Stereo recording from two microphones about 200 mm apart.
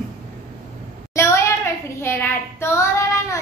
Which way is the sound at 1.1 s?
15° left (ahead or behind).